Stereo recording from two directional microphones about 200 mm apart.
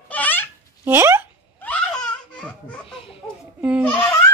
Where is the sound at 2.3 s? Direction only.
5° left (ahead or behind).